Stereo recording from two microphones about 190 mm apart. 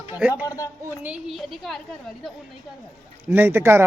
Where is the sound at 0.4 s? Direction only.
15° left (ahead or behind).